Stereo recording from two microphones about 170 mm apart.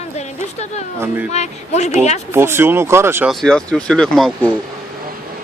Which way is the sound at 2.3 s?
15° right (ahead or behind).